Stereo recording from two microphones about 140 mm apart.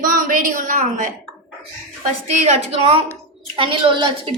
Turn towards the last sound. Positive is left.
turn(degrees=-35)  # may be behind; listen again after turning